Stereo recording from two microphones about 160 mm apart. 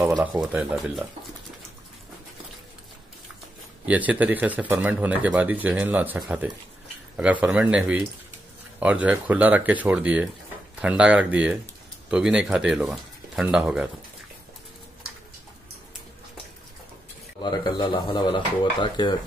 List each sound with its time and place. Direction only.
0.2 s speech: 10° right (ahead or behind)
3.8 s speech: 10° right (ahead or behind)
17.4 s speech: 25° left (ahead or behind)